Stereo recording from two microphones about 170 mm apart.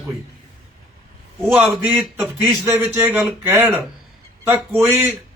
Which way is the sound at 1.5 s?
10° right (ahead or behind).